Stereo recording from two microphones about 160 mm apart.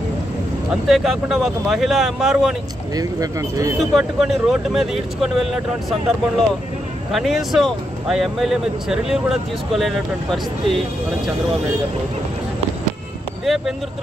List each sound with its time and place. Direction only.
0.8 s speech: centre (ahead or behind)
2.9 s speech: 20° right (ahead or behind)
3.9 s speech: centre (ahead or behind)
13.5 s speech: centre (ahead or behind)